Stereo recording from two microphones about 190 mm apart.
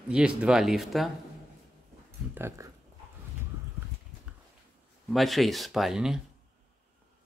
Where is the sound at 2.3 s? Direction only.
15° right (ahead or behind).